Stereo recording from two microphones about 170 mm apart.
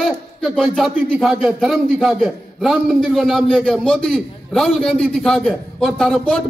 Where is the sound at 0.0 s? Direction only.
Centre (ahead or behind).